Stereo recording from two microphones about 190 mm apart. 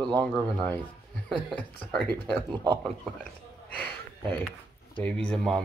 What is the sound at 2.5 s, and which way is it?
Speech, 20° right (ahead or behind).